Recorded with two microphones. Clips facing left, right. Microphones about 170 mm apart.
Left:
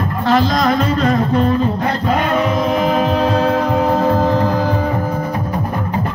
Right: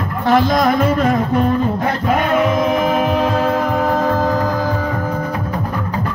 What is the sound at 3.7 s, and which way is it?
Music, 20° left (ahead or behind).